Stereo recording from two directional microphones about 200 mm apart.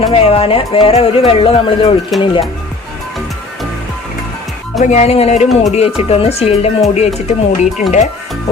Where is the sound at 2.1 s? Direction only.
Centre (ahead or behind).